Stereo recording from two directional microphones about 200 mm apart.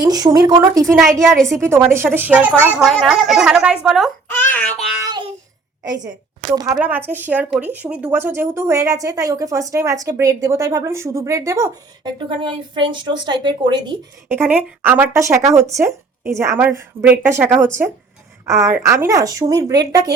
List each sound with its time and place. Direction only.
0.0 s speech: 20° right (ahead or behind)
1.4 s a woman's voice: centre (ahead or behind)
1.6 s speech: 10° right (ahead or behind)
3.8 s a sound: centre (ahead or behind)
6.1 s a woman's voice: 20° right (ahead or behind)
6.7 s speech: 10° right (ahead or behind)
14.3 s speech: 10° right (ahead or behind)